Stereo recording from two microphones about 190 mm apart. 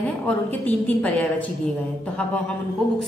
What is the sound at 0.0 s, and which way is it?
A woman's voice, 10° left (ahead or behind).